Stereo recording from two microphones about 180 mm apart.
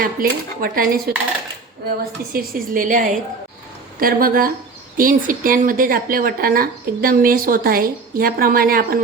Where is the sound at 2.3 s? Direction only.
55° right (ahead or behind).